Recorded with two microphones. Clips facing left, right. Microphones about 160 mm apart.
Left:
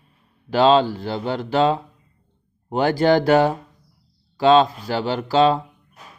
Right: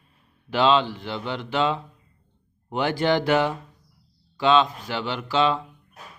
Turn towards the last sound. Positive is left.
turn(degrees=40)  # may be behind; listen again after turning